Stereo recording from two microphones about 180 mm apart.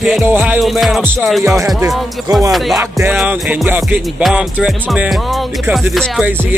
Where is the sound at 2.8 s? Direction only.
15° right (ahead or behind).